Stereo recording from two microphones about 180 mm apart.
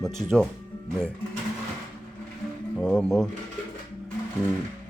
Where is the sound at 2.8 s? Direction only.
5° left (ahead or behind).